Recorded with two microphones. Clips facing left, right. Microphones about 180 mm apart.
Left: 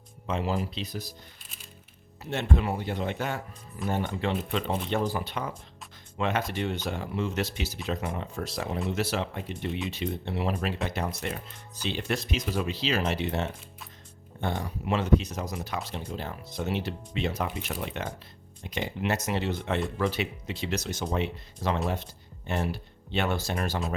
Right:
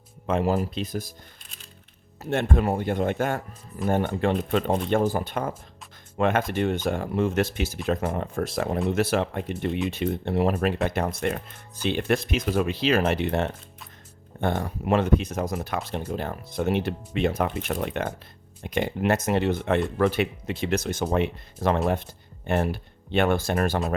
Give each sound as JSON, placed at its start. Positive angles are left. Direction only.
{"t": 0.3, "sound": "speech", "side_deg": -50}
{"t": 2.3, "sound": "speech", "side_deg": -50}